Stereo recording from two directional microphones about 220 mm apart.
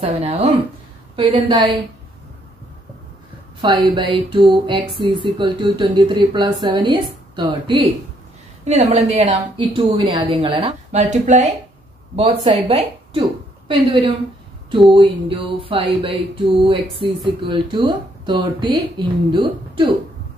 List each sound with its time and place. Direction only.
0.0 s speech: 30° right (ahead or behind)
3.6 s a woman's voice: 20° right (ahead or behind)